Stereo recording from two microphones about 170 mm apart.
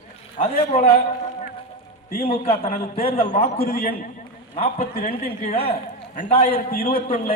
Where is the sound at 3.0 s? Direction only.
35° left (ahead or behind).